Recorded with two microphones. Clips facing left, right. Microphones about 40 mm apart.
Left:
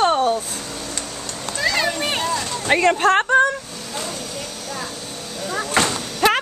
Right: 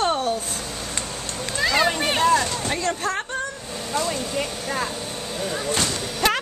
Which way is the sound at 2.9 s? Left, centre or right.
Left.